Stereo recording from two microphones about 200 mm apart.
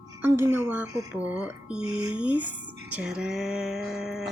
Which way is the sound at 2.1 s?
5° right (ahead or behind).